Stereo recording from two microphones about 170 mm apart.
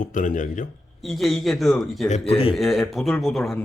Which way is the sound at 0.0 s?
50° left (ahead or behind).